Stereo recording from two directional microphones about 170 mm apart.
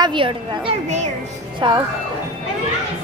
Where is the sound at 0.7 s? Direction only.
45° right (ahead or behind).